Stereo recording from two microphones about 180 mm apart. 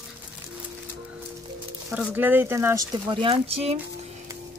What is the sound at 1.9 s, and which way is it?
Speech, 10° right (ahead or behind).